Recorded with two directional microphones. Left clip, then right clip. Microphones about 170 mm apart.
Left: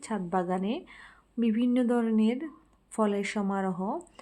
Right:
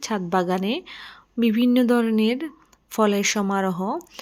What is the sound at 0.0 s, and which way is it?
A woman's voice, 30° right (ahead or behind).